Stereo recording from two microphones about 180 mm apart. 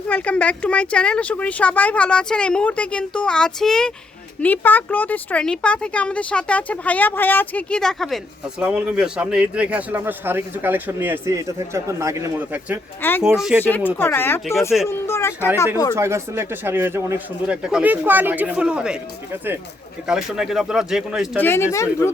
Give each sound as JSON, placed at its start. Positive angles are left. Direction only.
{"t": 0.1, "sound": "speech", "side_deg": 5}
{"t": 13.0, "sound": "speech", "side_deg": 10}
{"t": 13.2, "sound": "speech", "side_deg": -5}
{"t": 13.7, "sound": "speech", "side_deg": 10}
{"t": 16.0, "sound": "speech", "side_deg": -15}
{"t": 21.4, "sound": "speech", "side_deg": 15}